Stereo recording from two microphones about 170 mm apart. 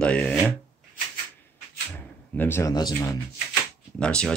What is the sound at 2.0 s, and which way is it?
A man's voice, 10° left (ahead or behind).